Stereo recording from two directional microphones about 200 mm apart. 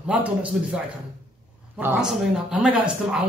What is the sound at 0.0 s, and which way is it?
Speech, 5° right (ahead or behind).